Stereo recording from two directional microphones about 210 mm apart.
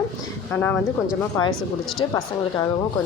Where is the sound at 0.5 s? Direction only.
10° left (ahead or behind).